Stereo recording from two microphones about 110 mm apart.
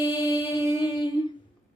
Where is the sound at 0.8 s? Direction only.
40° left (ahead or behind).